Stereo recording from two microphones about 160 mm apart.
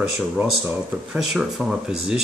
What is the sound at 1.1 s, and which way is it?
Speech, centre (ahead or behind).